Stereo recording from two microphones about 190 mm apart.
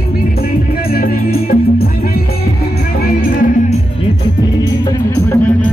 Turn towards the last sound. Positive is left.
turn(degrees=15)  # may be behind; listen again after turning